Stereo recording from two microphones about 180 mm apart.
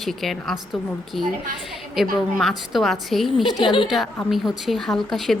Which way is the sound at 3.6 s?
30° left (ahead or behind).